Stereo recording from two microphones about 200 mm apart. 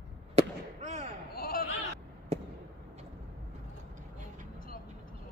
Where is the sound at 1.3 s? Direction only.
50° left (ahead or behind).